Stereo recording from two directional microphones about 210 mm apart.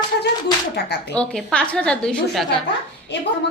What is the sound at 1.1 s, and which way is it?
A woman's voice, 5° left (ahead or behind).